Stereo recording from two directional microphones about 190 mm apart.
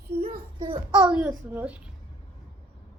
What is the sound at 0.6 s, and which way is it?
Speech, 20° right (ahead or behind).